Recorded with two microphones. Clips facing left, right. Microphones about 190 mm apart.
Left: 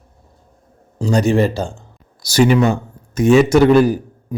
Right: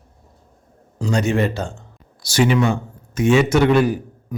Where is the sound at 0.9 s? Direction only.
35° left (ahead or behind).